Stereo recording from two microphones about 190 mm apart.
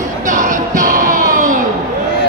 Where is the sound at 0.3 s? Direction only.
45° right (ahead or behind).